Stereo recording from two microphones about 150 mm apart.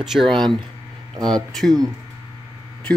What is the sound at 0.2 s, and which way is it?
Speech, 35° right (ahead or behind).